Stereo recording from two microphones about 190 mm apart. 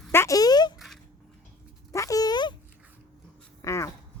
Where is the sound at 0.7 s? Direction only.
Centre (ahead or behind).